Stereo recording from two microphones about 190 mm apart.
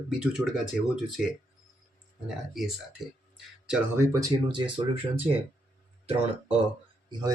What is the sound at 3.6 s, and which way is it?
Speech, 15° right (ahead or behind).